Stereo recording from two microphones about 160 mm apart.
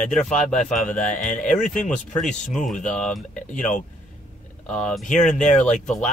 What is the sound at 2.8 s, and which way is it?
Speech, 5° left (ahead or behind).